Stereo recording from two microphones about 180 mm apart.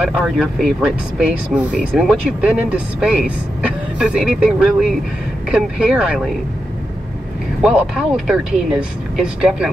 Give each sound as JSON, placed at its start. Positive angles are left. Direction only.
{"t": 0.1, "sound": "speech", "side_deg": -5}
{"t": 7.6, "sound": "speech", "side_deg": -5}